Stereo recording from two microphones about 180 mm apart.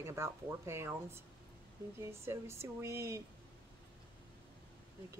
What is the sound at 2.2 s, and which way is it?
Speech, 15° right (ahead or behind).